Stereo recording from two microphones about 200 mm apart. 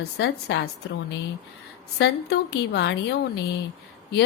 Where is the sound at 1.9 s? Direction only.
60° left (ahead or behind).